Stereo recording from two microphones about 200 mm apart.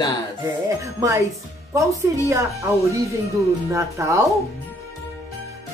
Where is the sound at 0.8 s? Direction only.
15° right (ahead or behind).